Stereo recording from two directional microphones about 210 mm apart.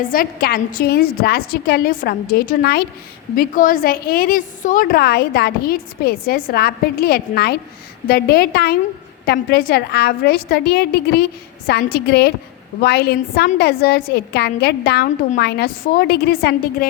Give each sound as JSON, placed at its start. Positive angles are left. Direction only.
{"t": 0.0, "sound": "a woman's voice", "side_deg": 45}